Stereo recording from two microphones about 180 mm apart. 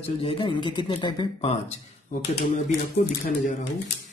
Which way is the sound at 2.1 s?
45° left (ahead or behind).